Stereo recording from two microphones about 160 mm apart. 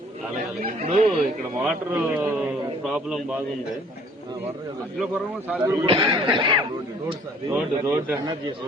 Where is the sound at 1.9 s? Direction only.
10° right (ahead or behind).